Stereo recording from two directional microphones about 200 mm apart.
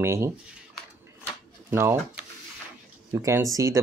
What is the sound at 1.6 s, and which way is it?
Speech, 10° right (ahead or behind).